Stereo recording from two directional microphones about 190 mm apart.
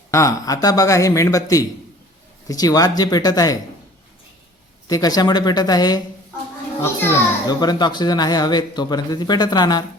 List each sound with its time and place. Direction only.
0.1 s a child's voice: 15° left (ahead or behind)
4.9 s a child's voice: 20° left (ahead or behind)